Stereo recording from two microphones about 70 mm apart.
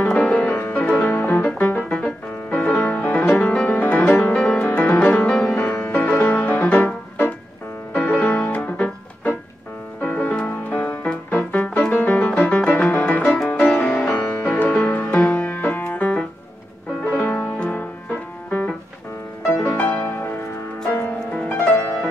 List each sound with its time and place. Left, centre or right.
0.2 s music: centre; by 6.3 s left
6.3 s music: left
7.9 s music: left
14.0 s music: left
19.8 s music: left